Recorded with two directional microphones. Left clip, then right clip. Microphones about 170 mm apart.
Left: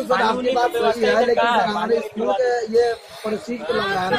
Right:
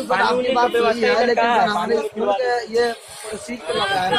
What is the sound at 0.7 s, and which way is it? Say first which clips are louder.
Speech: right 1 dB; 20° right (ahead or behind).